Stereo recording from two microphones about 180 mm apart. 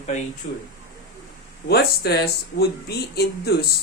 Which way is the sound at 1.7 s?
60° left (ahead or behind).